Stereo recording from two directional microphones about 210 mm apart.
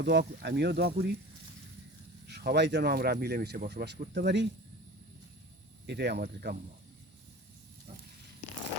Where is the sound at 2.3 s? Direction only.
50° right (ahead or behind).